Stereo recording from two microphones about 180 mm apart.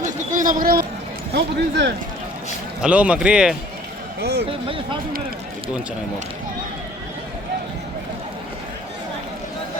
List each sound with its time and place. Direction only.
0.0 s a sound: 45° right (ahead or behind)
1.3 s speech: 70° right (ahead or behind)
2.8 s speech: 5° right (ahead or behind)
4.2 s speech: 65° right (ahead or behind)
4.4 s speech: 30° right (ahead or behind)